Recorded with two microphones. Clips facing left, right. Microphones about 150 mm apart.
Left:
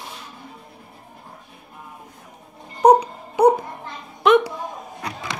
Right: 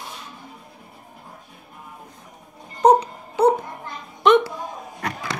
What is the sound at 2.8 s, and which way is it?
Wail, 15° left (ahead or behind).